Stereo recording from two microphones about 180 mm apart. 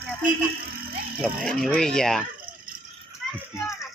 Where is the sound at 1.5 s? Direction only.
5° left (ahead or behind).